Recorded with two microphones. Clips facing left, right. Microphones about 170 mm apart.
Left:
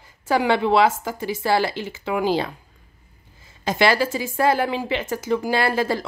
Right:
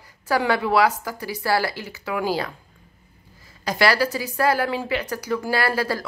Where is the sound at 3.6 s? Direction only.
25° left (ahead or behind).